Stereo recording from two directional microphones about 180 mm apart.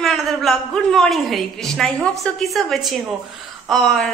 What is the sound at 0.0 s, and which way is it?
A woman's voice, centre (ahead or behind).